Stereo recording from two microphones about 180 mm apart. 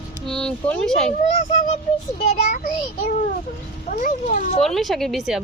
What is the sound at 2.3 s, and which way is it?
Speech, 40° left (ahead or behind).